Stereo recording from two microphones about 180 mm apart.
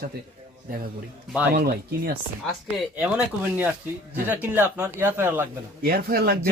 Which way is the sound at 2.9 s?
10° right (ahead or behind).